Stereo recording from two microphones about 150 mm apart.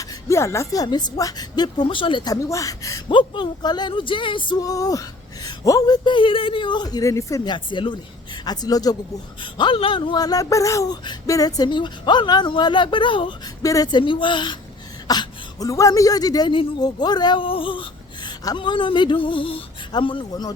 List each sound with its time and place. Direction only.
0.0 s speech: 20° left (ahead or behind)
3.1 s speech: 35° left (ahead or behind)